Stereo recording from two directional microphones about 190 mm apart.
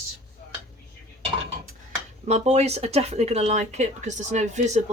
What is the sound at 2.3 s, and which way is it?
Speech, 35° right (ahead or behind).